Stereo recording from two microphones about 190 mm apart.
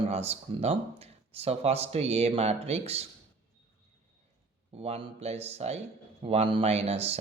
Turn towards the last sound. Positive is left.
turn(degrees=-35)  # may be behind; listen again after turning